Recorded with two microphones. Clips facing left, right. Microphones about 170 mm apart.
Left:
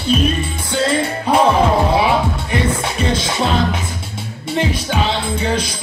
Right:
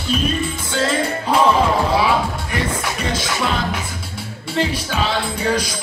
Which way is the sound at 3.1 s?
25° left (ahead or behind).